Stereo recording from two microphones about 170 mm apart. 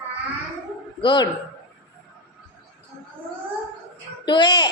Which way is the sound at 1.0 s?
30° left (ahead or behind).